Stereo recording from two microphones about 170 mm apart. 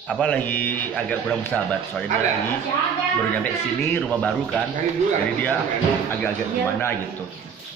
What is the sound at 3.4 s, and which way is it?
A man's voice, 10° left (ahead or behind).